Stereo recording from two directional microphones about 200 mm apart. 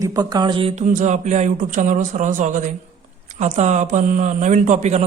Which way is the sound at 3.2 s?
35° right (ahead or behind).